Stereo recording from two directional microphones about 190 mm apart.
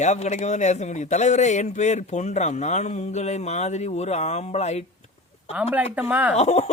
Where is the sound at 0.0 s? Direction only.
35° left (ahead or behind).